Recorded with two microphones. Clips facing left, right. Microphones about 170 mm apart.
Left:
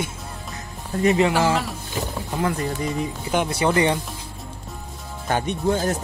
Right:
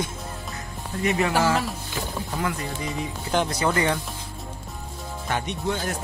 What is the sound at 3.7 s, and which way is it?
Speech, 20° left (ahead or behind).